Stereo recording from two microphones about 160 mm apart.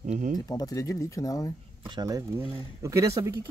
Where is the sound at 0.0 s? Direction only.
50° right (ahead or behind).